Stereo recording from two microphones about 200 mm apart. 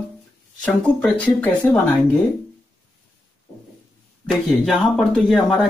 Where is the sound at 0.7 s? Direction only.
5° left (ahead or behind).